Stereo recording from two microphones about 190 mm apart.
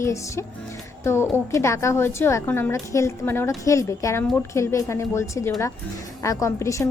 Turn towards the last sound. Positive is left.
turn(degrees=15)  # may be behind; listen again after turning